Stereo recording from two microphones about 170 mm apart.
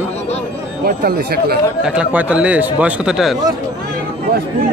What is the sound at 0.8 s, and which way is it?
Speech, 65° right (ahead or behind).